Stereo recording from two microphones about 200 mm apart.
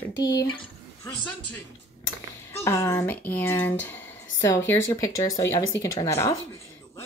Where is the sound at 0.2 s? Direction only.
20° left (ahead or behind).